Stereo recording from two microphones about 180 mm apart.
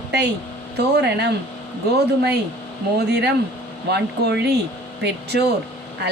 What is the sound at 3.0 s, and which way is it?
A woman's voice, 65° right (ahead or behind).